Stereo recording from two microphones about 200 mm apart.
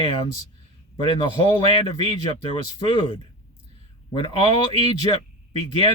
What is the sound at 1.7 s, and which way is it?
Speech, 25° left (ahead or behind).